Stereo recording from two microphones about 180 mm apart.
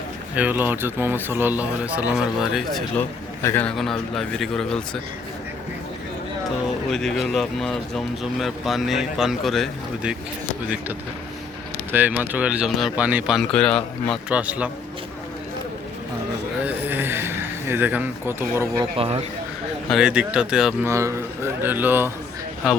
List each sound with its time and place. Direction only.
0.3 s speech: 10° right (ahead or behind)
6.9 s speech: centre (ahead or behind)
11.9 s speech: 10° right (ahead or behind)
14.3 s speech: 5° right (ahead or behind)
16.6 s a sound: 10° right (ahead or behind)
18.9 s speech: 35° right (ahead or behind)
19.9 s speech: 5° right (ahead or behind)
20.8 s speech: 15° right (ahead or behind)